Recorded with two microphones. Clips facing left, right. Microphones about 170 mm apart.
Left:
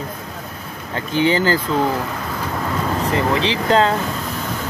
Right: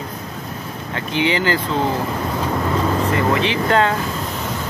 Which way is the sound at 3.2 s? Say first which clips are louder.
Right 1 dB; 30° left (ahead or behind).